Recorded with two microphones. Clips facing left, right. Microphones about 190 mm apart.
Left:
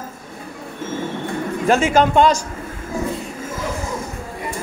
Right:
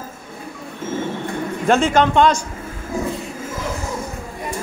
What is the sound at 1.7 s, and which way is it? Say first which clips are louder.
Speech: even; 5° left (ahead or behind).